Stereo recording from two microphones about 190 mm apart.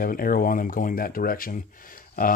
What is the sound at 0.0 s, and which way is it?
Speech, 50° left (ahead or behind).